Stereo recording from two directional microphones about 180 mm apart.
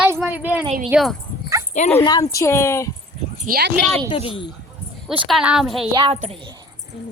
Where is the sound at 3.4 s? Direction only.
55° right (ahead or behind).